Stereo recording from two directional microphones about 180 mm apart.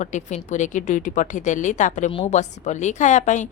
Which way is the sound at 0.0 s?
40° left (ahead or behind).